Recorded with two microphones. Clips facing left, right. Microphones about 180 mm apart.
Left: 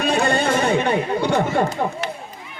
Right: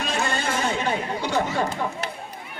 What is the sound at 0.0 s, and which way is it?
Chatter, 60° left (ahead or behind).